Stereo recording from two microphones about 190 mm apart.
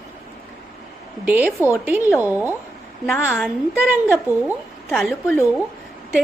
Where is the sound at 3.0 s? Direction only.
15° left (ahead or behind).